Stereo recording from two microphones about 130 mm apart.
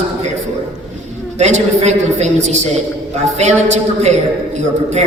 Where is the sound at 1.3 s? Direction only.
60° right (ahead or behind).